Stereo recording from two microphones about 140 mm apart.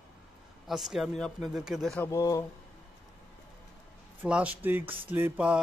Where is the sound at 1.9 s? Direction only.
15° left (ahead or behind).